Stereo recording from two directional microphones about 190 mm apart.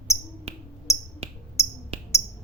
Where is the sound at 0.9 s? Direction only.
15° left (ahead or behind).